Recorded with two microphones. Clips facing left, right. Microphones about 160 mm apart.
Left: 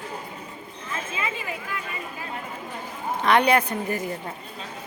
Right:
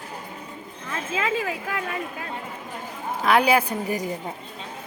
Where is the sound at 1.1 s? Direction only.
90° right.